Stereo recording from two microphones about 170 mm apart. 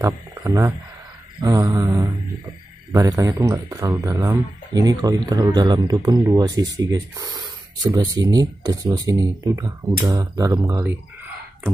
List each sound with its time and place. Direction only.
0.0 s speech: 15° right (ahead or behind)